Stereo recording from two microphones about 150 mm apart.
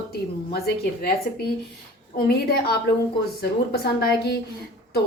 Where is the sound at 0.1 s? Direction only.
90° left.